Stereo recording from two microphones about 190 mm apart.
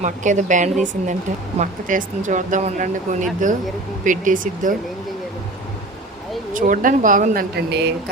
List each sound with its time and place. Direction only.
0.0 s speech: 40° right (ahead or behind)
6.5 s speech: 45° right (ahead or behind); by 7.9 s 60° right (ahead or behind)